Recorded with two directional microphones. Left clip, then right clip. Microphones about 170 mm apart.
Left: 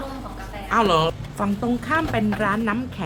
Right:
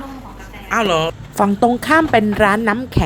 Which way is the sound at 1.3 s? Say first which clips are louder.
Right 10 dB; 40° right (ahead or behind).